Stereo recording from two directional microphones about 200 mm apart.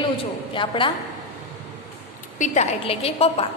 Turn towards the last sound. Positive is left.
turn(degrees=30)  # may be behind; listen again after turning